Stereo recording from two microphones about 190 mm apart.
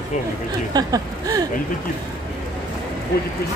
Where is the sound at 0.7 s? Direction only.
20° right (ahead or behind).